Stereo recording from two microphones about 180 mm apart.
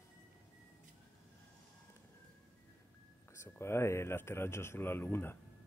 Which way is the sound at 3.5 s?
15° left (ahead or behind).